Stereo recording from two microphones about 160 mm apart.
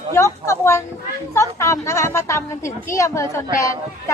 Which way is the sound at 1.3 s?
20° left (ahead or behind).